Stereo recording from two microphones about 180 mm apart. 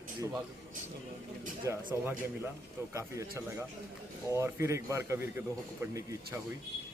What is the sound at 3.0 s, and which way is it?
A man's voice, 15° right (ahead or behind).